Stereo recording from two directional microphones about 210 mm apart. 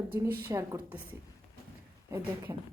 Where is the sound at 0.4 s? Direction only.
15° right (ahead or behind).